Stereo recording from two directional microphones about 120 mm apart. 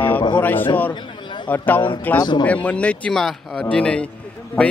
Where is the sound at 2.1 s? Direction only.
35° left (ahead or behind).